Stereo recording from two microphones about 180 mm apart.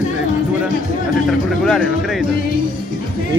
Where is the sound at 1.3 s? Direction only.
5° left (ahead or behind).